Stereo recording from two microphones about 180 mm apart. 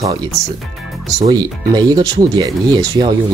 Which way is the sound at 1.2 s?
20° right (ahead or behind).